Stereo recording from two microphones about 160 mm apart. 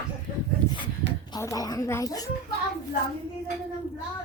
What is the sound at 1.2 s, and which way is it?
Speech, 25° left (ahead or behind).